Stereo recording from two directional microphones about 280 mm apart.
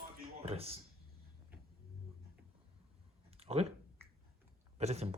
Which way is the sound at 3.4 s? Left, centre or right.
Right.